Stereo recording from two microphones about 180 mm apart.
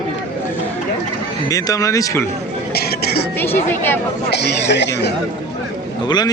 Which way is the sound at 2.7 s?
60° left (ahead or behind).